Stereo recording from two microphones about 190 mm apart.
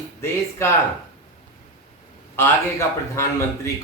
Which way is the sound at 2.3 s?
15° left (ahead or behind).